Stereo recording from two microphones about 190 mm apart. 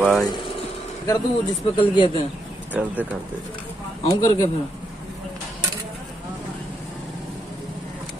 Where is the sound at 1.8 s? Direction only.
30° left (ahead or behind).